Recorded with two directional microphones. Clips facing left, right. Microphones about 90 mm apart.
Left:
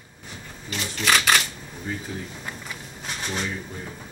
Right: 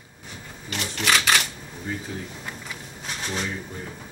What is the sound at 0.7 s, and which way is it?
Typewriter, 65° right (ahead or behind).